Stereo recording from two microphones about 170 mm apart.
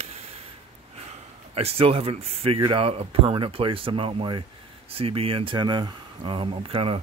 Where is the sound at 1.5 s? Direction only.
35° right (ahead or behind).